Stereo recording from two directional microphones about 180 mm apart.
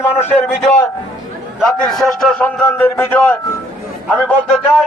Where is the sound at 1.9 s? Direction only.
Centre (ahead or behind).